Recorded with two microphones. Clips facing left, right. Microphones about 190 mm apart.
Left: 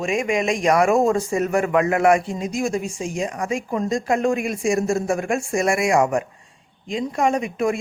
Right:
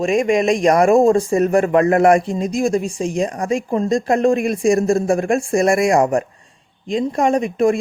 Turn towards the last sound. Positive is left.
turn(degrees=-35)  # may be behind; listen again after turning